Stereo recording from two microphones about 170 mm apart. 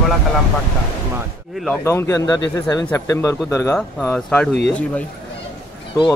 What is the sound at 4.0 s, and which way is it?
Speech, 5° left (ahead or behind).